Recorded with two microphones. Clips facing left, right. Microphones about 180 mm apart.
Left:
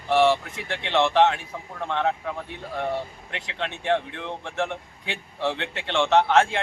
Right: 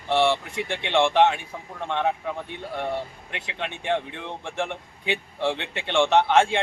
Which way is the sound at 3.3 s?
10° right (ahead or behind).